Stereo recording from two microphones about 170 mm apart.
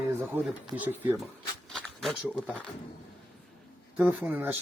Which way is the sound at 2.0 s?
Centre (ahead or behind).